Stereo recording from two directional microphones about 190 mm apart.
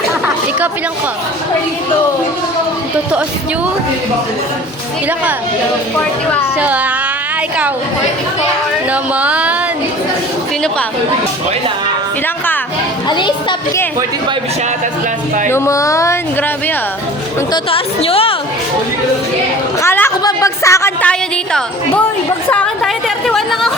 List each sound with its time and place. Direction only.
6.6 s speech: 5° right (ahead or behind)
8.9 s speech: 5° right (ahead or behind)
13.1 s a woman's voice: 25° left (ahead or behind)
15.4 s speech: 15° left (ahead or behind)
17.5 s a woman's voice: 30° left (ahead or behind)
19.8 s a woman's voice: 15° left (ahead or behind)
22.4 s chatter: 5° left (ahead or behind)